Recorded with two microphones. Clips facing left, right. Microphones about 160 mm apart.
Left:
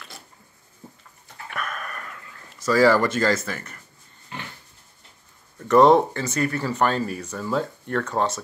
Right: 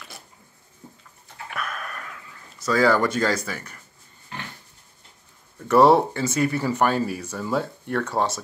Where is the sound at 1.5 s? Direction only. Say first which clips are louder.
Even; centre (ahead or behind).